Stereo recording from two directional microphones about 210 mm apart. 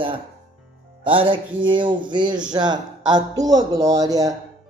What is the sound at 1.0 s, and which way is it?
Speech, 25° right (ahead or behind).